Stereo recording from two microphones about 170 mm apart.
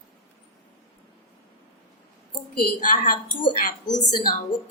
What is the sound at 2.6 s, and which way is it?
Speech, 55° left (ahead or behind).